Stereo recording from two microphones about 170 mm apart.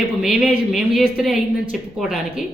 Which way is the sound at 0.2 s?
5° right (ahead or behind).